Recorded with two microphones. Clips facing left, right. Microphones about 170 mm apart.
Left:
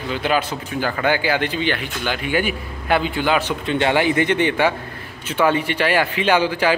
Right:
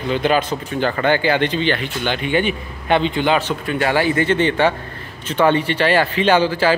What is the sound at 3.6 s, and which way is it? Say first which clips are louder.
A man's voice: even; 25° left (ahead or behind).